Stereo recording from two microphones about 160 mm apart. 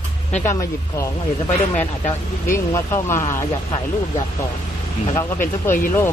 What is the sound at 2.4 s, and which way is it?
Speech, 15° left (ahead or behind).